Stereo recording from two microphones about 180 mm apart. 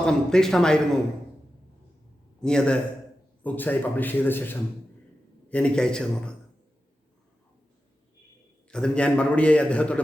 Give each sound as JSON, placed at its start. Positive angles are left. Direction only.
{"t": 0.0, "sound": "a man's voice", "side_deg": 5}
{"t": 2.4, "sound": "a man's voice", "side_deg": 5}
{"t": 8.7, "sound": "a man's voice", "side_deg": 5}